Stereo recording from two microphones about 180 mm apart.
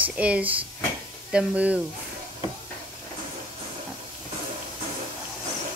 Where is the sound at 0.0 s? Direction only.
10° right (ahead or behind).